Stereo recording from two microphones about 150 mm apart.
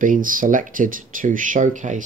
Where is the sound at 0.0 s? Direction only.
65° right (ahead or behind).